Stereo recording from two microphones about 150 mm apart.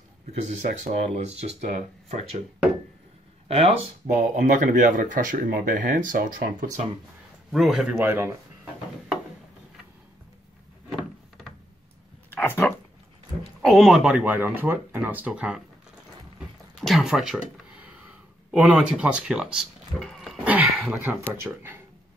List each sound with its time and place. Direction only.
0.3 s speech: 50° right (ahead or behind)
3.4 s speech: 40° right (ahead or behind)
4.2 s speech: 60° right (ahead or behind)
7.5 s speech: centre (ahead or behind)
8.0 s speech: 15° right (ahead or behind)
12.3 s a sound: 15° left (ahead or behind)
13.6 s speech: centre (ahead or behind)
16.3 s a sound: centre (ahead or behind)
20.4 s speech: 10° right (ahead or behind)